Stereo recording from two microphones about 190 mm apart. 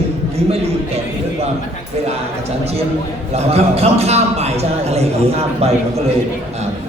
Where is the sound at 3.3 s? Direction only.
35° right (ahead or behind).